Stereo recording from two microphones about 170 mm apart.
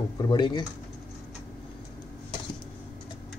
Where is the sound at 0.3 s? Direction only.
25° left (ahead or behind).